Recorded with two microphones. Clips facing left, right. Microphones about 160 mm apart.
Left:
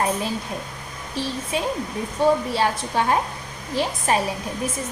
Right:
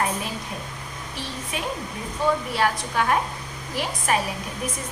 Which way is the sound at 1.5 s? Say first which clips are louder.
Left 5 dB; 30° left (ahead or behind).